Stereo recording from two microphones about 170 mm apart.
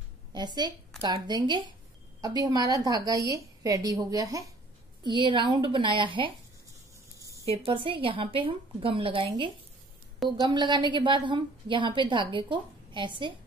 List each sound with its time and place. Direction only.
0.3 s a woman's voice: 25° right (ahead or behind)
7.2 s a sound: 20° right (ahead or behind)
7.4 s a woman's voice: 35° right (ahead or behind)